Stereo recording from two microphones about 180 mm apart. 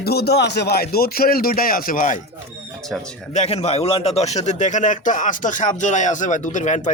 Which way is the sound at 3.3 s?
35° left (ahead or behind).